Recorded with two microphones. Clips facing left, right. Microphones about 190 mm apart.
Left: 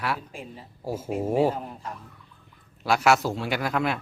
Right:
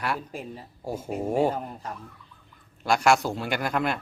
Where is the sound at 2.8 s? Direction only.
5° left (ahead or behind).